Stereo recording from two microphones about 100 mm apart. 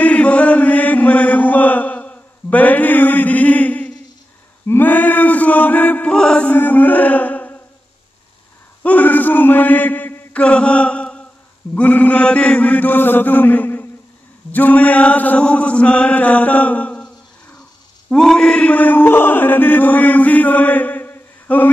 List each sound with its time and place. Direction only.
0.0 s chant: 10° left (ahead or behind)
6.5 s a sound: 15° left (ahead or behind)
8.8 s chant: 15° left (ahead or behind)